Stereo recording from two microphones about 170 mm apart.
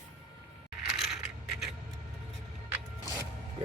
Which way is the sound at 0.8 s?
Centre (ahead or behind).